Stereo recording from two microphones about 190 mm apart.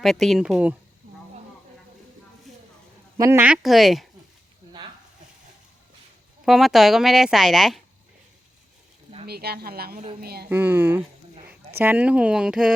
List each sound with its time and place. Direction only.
0.0 s speech: centre (ahead or behind)
3.2 s speech: 15° right (ahead or behind)
6.4 s speech: centre (ahead or behind)
9.2 s a woman's voice: 55° right (ahead or behind)
10.5 s speech: 10° right (ahead or behind)